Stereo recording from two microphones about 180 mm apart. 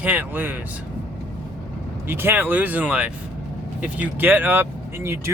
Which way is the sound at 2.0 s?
10° right (ahead or behind).